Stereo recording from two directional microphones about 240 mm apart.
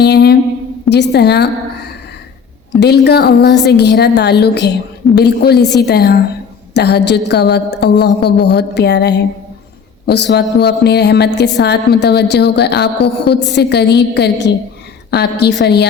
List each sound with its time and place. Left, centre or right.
0.0 s a sound: left
0.9 s a woman's voice: left
2.8 s a woman's voice: left